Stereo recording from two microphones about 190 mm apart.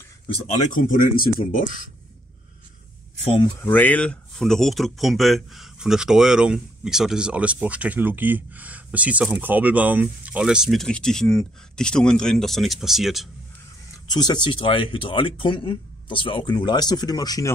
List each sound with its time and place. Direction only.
0.7 s speech: 45° left (ahead or behind)
3.5 s speech: 10° left (ahead or behind)
14.0 s speech: 20° left (ahead or behind)